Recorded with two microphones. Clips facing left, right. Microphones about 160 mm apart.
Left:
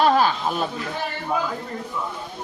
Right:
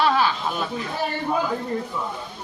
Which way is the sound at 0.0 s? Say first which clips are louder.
Left 3 dB; 45° left (ahead or behind).